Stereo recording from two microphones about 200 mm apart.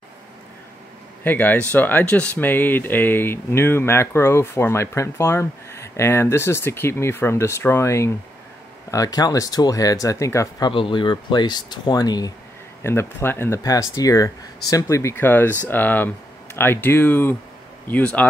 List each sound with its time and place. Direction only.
1.2 s speech: 10° left (ahead or behind)